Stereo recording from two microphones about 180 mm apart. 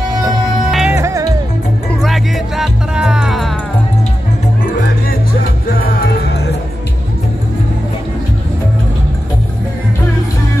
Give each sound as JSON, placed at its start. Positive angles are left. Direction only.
{"t": 0.2, "sound": "music", "side_deg": -5}
{"t": 0.9, "sound": "music", "side_deg": -15}
{"t": 1.9, "sound": "music", "side_deg": 0}
{"t": 5.8, "sound": "music", "side_deg": 65}